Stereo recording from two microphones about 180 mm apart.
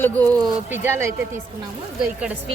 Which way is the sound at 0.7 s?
15° right (ahead or behind).